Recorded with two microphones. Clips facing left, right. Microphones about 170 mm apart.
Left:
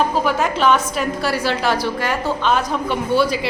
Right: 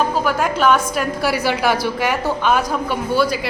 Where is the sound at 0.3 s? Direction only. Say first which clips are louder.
Right 2 dB; 5° right (ahead or behind).